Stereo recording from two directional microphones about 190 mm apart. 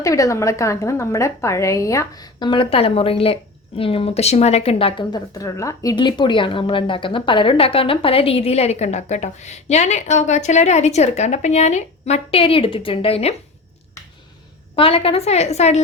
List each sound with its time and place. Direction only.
0.0 s a woman's voice: 15° left (ahead or behind)
14.8 s a woman's voice: 30° left (ahead or behind)